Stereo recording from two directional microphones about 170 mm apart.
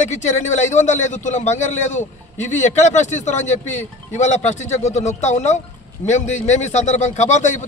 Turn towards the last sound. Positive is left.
turn(degrees=45)  # may be behind; listen again after turning